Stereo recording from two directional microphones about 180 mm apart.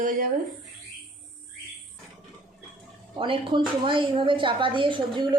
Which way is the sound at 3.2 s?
30° right (ahead or behind).